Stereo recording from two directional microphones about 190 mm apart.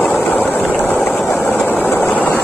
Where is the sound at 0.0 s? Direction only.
5° left (ahead or behind).